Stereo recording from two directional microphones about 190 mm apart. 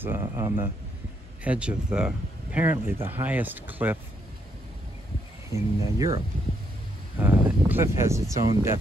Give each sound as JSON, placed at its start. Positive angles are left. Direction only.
{"t": 0.0, "sound": "speech", "side_deg": -10}
{"t": 5.5, "sound": "speech", "side_deg": -20}